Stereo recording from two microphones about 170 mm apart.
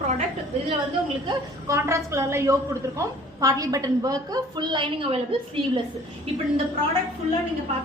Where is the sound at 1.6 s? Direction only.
15° right (ahead or behind).